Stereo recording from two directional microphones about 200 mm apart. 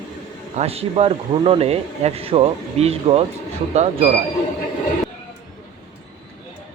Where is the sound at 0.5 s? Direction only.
30° right (ahead or behind).